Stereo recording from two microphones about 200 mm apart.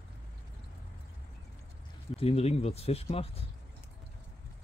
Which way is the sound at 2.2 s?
30° left (ahead or behind).